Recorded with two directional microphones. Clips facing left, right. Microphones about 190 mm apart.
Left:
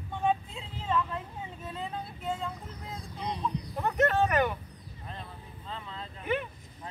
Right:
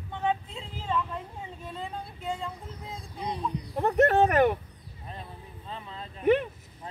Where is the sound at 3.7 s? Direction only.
40° right (ahead or behind).